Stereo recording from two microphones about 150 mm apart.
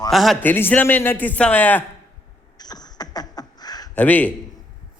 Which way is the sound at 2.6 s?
25° left (ahead or behind).